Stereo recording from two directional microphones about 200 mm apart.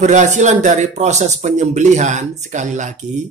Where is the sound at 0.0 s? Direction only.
35° right (ahead or behind).